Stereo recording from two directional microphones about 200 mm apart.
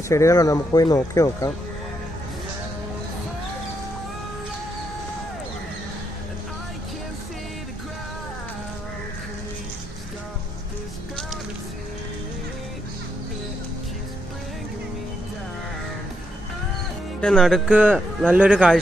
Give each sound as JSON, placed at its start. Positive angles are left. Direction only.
{"t": 0.1, "sound": "speech", "side_deg": 15}
{"t": 17.2, "sound": "speech", "side_deg": 5}